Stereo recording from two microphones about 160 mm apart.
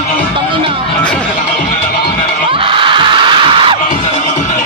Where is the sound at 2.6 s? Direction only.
30° right (ahead or behind).